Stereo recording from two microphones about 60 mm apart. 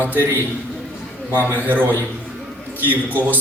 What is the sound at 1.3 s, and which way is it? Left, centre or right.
A man's voice, right.